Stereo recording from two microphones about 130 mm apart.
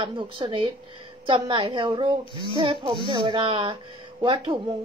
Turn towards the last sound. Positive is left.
turn(degrees=-40)  # may be behind; listen again after turning